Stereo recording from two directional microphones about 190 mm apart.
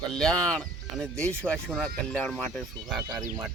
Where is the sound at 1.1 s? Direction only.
15° right (ahead or behind).